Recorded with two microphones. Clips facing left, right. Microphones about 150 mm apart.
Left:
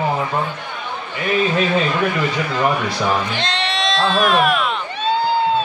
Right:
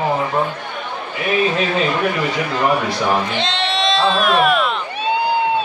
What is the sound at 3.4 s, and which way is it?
Bleat, centre (ahead or behind).